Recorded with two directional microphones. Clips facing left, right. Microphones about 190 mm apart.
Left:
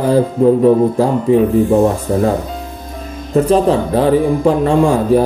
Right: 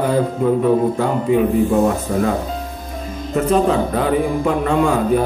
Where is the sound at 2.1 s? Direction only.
30° left (ahead or behind).